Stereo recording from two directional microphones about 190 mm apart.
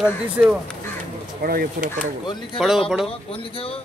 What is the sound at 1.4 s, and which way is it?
Speech, 50° right (ahead or behind).